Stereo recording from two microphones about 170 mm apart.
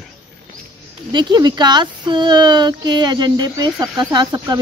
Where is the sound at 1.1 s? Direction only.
25° right (ahead or behind).